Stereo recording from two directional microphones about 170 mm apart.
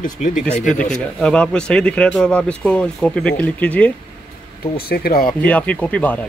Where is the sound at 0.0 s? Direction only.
50° left (ahead or behind).